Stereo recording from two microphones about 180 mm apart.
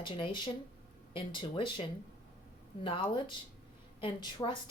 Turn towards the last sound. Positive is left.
turn(degrees=25)  # may be behind; listen again after turning